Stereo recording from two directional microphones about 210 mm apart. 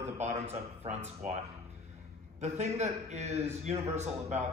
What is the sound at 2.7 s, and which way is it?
Speech, 30° right (ahead or behind).